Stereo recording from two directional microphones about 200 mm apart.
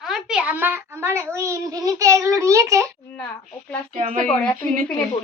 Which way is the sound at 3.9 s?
40° right (ahead or behind).